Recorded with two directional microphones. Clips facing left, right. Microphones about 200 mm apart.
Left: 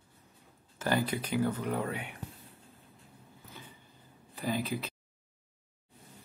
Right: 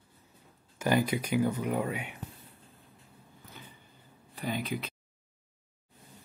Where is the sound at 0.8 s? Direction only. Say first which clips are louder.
Right 3 dB; 10° right (ahead or behind).